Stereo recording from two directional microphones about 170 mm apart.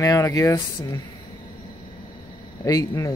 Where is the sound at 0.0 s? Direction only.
20° left (ahead or behind).